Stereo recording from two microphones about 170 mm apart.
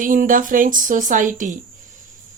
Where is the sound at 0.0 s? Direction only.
50° right (ahead or behind).